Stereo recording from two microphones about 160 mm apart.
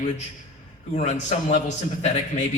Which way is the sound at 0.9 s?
45° left (ahead or behind).